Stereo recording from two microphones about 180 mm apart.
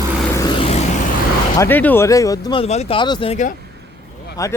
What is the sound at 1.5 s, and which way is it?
Speech, 15° left (ahead or behind).